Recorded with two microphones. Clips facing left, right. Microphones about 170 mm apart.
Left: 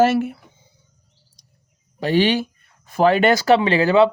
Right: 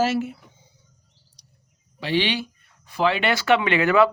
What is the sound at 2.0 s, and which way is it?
Speech, 45° left (ahead or behind).